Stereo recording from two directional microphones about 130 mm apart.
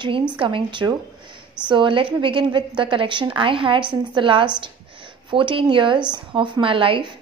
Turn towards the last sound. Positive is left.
turn(degrees=-40)  # may be behind; listen again after turning